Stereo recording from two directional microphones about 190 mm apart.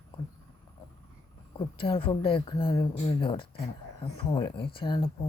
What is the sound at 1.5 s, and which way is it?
Speech, 25° left (ahead or behind).